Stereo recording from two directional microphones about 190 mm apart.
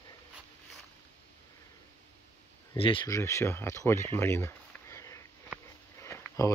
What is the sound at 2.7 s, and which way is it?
Speech, 25° left (ahead or behind).